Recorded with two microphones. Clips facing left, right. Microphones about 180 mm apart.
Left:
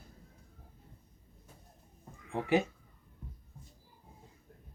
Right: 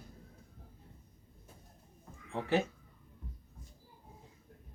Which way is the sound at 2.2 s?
15° left (ahead or behind).